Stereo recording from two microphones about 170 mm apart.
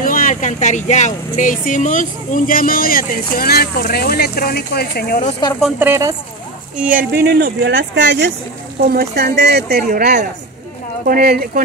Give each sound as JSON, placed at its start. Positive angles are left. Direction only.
{"t": 0.0, "sound": "speech", "side_deg": 55}
{"t": 5.8, "sound": "speech", "side_deg": -15}
{"t": 6.9, "sound": "speech", "side_deg": -60}
{"t": 8.9, "sound": "speech", "side_deg": -70}